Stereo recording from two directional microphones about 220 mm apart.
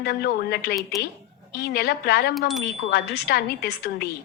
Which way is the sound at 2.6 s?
50° left (ahead or behind).